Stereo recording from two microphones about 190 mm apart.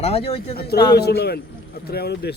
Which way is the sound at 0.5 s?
55° left (ahead or behind).